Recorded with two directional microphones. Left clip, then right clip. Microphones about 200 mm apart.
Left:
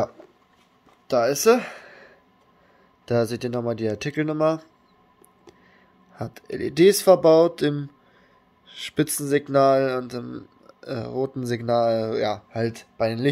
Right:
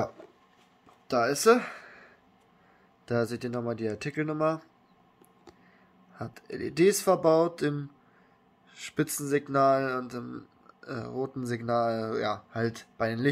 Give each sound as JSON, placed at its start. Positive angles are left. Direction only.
{"t": 1.0, "sound": "a sound", "side_deg": 20}
{"t": 3.1, "sound": "speech", "side_deg": 20}
{"t": 6.1, "sound": "speech", "side_deg": 25}